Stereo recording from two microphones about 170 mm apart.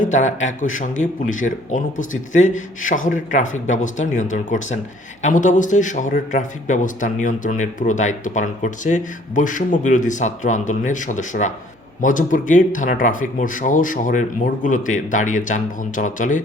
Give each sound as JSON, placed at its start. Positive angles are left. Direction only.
{"t": 0.0, "sound": "a man's voice", "side_deg": 45}